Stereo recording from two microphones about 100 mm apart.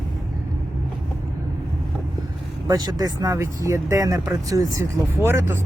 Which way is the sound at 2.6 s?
40° right (ahead or behind).